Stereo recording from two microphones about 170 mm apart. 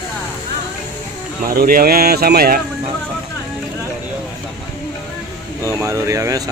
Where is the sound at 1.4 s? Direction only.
60° right (ahead or behind).